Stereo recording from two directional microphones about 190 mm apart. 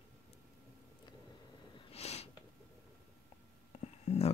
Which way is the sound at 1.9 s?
35° left (ahead or behind).